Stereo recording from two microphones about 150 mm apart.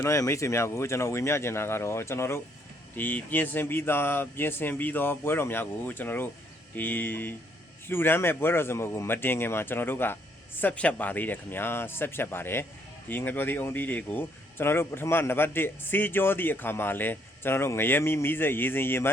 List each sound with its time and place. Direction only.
0.0 s speech: 20° left (ahead or behind)